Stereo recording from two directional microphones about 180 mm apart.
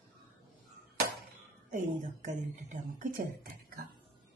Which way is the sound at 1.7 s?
45° right (ahead or behind).